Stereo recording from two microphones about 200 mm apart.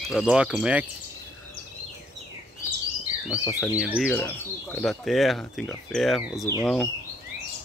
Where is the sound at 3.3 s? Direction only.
15° left (ahead or behind).